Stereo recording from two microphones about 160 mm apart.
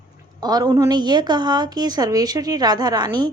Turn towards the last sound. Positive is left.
turn(degrees=-25)  # may be behind; listen again after turning